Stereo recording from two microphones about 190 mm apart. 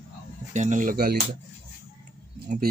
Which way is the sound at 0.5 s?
40° right (ahead or behind).